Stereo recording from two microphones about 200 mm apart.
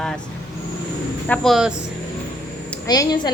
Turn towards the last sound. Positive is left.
turn(degrees=20)  # may be behind; listen again after turning